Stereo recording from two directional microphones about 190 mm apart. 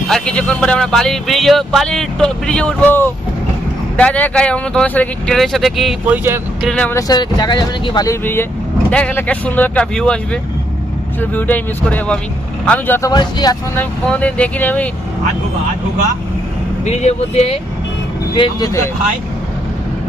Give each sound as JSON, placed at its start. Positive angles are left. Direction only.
{"t": 0.1, "sound": "speech", "side_deg": 5}
{"t": 7.1, "sound": "speech", "side_deg": 20}
{"t": 11.2, "sound": "speech", "side_deg": 10}
{"t": 14.1, "sound": "speech", "side_deg": 5}
{"t": 16.8, "sound": "speech", "side_deg": 35}
{"t": 18.3, "sound": "speech", "side_deg": 25}